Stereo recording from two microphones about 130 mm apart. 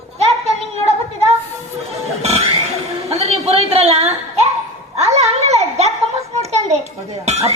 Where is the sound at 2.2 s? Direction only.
55° right (ahead or behind).